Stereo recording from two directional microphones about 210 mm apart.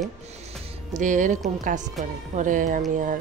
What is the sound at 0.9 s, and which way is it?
Speech, 35° right (ahead or behind).